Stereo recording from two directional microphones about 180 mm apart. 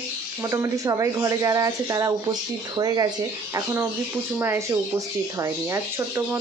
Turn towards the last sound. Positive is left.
turn(degrees=-15)  # may be behind; listen again after turning